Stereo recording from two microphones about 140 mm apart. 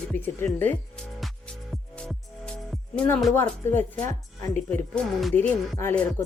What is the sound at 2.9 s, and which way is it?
Speech, 10° left (ahead or behind).